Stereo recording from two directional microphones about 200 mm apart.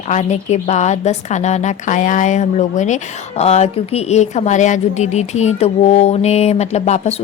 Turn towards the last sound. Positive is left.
turn(degrees=35)  # may be behind; listen again after turning